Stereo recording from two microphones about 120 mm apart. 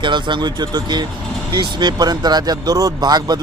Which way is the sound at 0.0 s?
40° right (ahead or behind).